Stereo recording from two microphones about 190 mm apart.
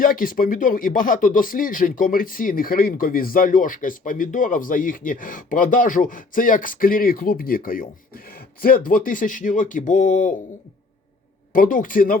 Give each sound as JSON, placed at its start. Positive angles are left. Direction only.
{"t": 0.0, "sound": "speech", "side_deg": 45}
{"t": 11.5, "sound": "speech", "side_deg": 45}